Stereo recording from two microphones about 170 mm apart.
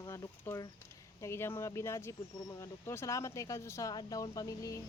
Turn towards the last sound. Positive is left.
turn(degrees=20)  # may be behind; listen again after turning